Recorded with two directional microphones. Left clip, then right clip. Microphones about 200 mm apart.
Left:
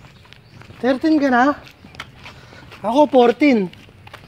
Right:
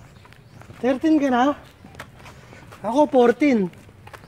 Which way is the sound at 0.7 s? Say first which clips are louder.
Left 2 dB; 20° left (ahead or behind).